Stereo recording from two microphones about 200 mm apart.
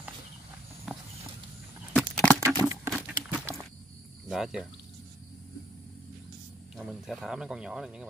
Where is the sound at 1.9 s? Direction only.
5° left (ahead or behind).